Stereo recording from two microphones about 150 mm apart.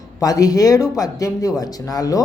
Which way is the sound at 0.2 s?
25° left (ahead or behind).